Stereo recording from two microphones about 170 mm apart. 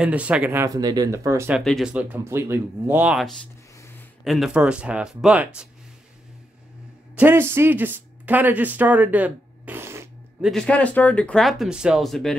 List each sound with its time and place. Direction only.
0.0 s speech: 10° right (ahead or behind)
1.6 s speech: centre (ahead or behind)
3.7 s a sound: 15° left (ahead or behind)
4.2 s speech: centre (ahead or behind)
7.2 s speech: 10° right (ahead or behind)
10.4 s speech: 5° left (ahead or behind)